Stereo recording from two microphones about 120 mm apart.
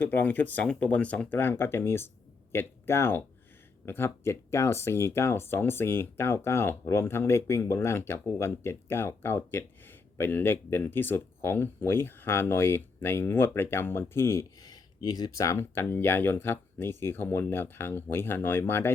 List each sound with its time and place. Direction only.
0.0 s speech: 15° left (ahead or behind)
14.7 s speech: 35° left (ahead or behind); by 18.9 s 20° left (ahead or behind)